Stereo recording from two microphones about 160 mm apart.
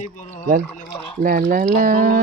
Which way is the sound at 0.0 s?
45° left (ahead or behind).